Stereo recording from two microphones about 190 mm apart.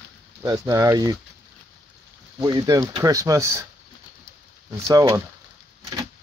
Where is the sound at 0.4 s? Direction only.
20° right (ahead or behind).